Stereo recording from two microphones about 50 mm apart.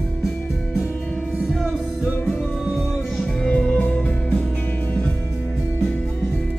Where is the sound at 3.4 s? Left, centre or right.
Left.